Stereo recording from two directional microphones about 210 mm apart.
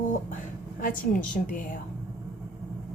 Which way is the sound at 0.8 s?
40° left (ahead or behind).